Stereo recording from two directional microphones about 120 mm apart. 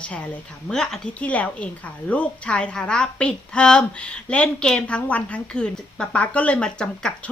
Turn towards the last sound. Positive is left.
turn(degrees=5)  # may be behind; listen again after turning